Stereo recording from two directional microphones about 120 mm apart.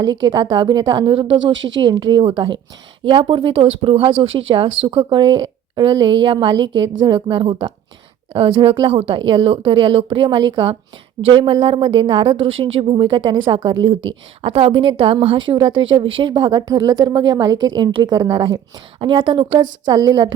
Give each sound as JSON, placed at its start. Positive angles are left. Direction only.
{"t": 0.3, "sound": "a woman's voice", "side_deg": -40}
{"t": 14.4, "sound": "a woman's voice", "side_deg": -50}